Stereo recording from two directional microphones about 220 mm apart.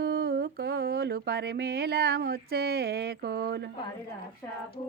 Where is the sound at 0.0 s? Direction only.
45° right (ahead or behind).